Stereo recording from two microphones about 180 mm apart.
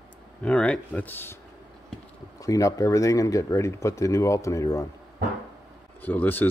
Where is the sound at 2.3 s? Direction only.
20° left (ahead or behind).